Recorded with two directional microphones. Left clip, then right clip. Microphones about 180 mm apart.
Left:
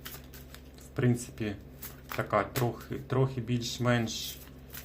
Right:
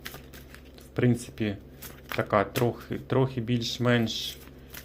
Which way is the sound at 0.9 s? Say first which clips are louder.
Right 4 dB; 30° right (ahead or behind).